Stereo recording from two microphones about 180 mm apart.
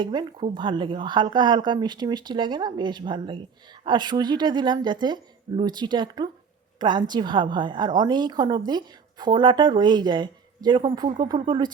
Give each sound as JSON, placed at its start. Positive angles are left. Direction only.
{"t": 0.0, "sound": "a woman's voice", "side_deg": -25}